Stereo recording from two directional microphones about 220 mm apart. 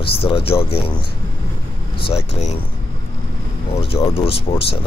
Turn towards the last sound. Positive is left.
turn(degrees=25)  # may be behind; listen again after turning